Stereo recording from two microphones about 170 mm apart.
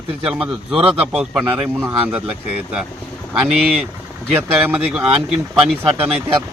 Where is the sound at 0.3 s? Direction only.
Centre (ahead or behind).